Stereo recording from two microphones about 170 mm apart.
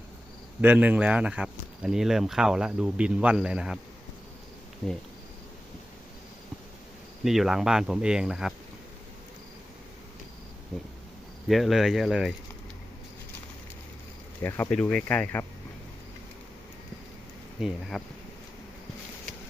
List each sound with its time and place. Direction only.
0.6 s speech: 10° right (ahead or behind)
7.3 s speech: centre (ahead or behind)
11.4 s speech: centre (ahead or behind)
14.4 s speech: 10° left (ahead or behind)
17.6 s speech: centre (ahead or behind)